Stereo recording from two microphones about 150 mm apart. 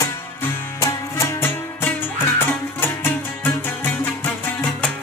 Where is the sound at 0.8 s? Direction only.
20° left (ahead or behind).